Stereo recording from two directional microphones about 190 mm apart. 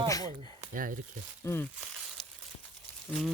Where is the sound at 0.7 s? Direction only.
45° right (ahead or behind).